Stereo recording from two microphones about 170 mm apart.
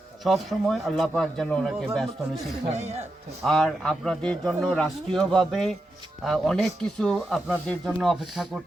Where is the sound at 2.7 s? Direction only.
40° right (ahead or behind).